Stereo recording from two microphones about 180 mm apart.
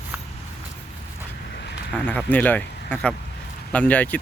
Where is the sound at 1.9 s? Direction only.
10° left (ahead or behind).